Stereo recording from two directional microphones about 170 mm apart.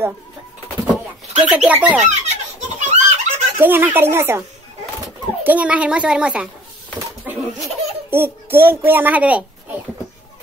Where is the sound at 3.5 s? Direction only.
10° right (ahead or behind).